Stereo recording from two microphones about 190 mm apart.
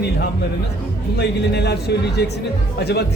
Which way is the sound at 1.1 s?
60° left (ahead or behind).